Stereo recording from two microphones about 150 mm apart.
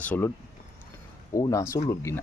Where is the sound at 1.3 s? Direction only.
20° left (ahead or behind).